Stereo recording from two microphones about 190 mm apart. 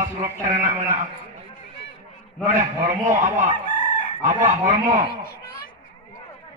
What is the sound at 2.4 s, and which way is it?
A man's voice, 40° right (ahead or behind).